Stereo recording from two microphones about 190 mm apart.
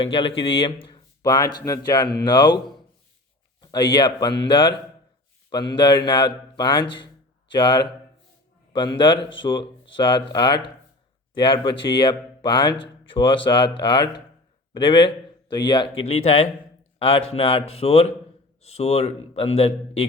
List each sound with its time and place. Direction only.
0.0 s speech: 30° left (ahead or behind)
3.6 s a man's voice: 20° left (ahead or behind)